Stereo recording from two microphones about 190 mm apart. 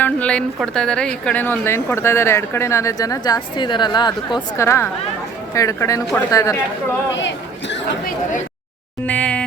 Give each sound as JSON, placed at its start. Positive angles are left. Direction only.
{"t": 0.0, "sound": "a woman's voice", "side_deg": 5}
{"t": 9.0, "sound": "a woman's voice", "side_deg": 5}